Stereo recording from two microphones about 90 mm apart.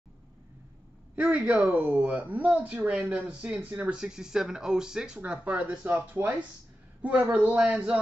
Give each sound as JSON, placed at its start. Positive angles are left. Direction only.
{"t": 1.1, "sound": "speech", "side_deg": -15}